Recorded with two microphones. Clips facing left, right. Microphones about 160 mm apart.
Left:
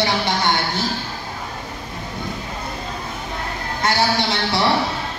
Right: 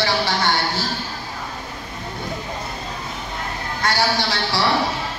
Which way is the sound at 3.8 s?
25° left (ahead or behind).